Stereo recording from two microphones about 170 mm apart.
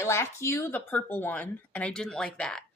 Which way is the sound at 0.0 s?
15° left (ahead or behind).